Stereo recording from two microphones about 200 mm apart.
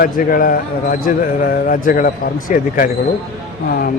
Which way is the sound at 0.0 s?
45° left (ahead or behind).